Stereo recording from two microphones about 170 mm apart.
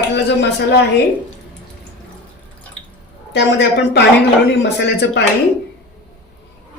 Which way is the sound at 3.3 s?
90° left.